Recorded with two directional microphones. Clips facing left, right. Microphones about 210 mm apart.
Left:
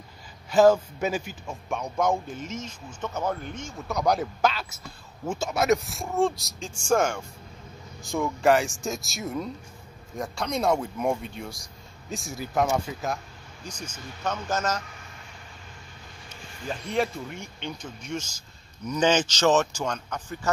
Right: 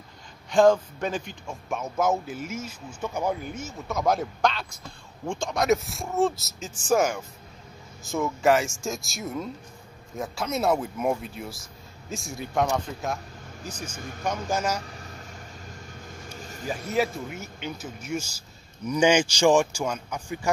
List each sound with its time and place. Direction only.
0.5 s a man's voice: 5° left (ahead or behind)
13.7 s speech: 10° right (ahead or behind)
16.3 s a sound: 40° right (ahead or behind)
16.6 s speech: 5° right (ahead or behind)